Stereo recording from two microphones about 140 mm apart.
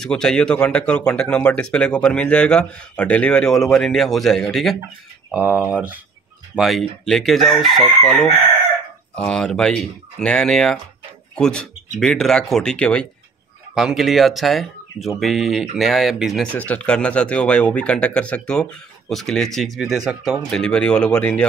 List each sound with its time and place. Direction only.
0.0 s speech: 5° left (ahead or behind)
5.3 s speech: 10° right (ahead or behind)
16.5 s speech: 10° left (ahead or behind)